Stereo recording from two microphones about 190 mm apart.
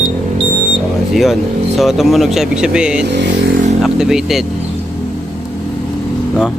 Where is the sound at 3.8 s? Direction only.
5° right (ahead or behind).